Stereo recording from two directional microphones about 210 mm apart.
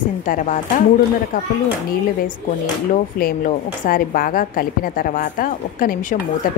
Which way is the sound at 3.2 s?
40° left (ahead or behind).